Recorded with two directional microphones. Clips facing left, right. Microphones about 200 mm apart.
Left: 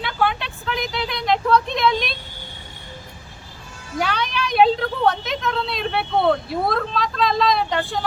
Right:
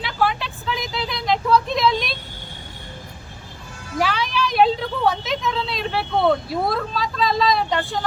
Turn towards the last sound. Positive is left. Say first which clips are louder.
# even
turn(degrees=0)  # may be behind; listen again after turning